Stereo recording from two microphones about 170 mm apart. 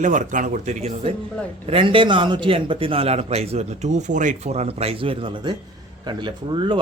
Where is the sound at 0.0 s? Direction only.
50° right (ahead or behind).